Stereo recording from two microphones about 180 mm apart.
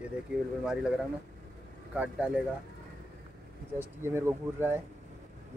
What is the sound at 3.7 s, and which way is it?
Speech, 15° right (ahead or behind).